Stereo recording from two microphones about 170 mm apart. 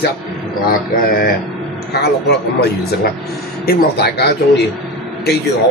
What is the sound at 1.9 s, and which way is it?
A man's voice, 75° left (ahead or behind).